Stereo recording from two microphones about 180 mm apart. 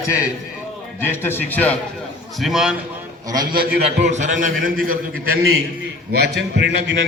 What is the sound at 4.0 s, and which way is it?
A man's voice, 40° right (ahead or behind).